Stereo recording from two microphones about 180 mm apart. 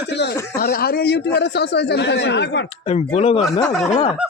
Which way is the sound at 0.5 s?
55° left (ahead or behind).